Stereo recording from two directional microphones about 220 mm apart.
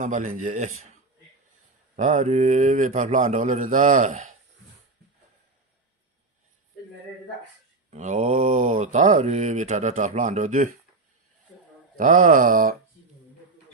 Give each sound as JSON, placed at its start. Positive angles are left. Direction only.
{"t": 0.0, "sound": "speech", "side_deg": -35}
{"t": 2.0, "sound": "speech", "side_deg": -35}
{"t": 7.9, "sound": "speech", "side_deg": -30}
{"t": 11.9, "sound": "speech", "side_deg": -35}